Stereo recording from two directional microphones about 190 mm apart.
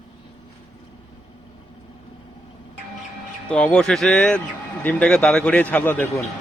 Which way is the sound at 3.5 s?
5° left (ahead or behind).